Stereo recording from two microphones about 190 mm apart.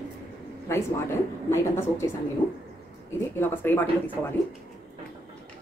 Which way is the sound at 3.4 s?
10° left (ahead or behind).